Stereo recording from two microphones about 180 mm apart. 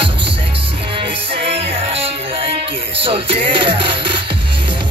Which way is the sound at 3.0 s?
30° right (ahead or behind).